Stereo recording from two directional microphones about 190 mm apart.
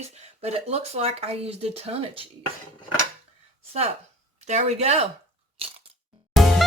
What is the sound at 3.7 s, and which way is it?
Speech, 35° right (ahead or behind).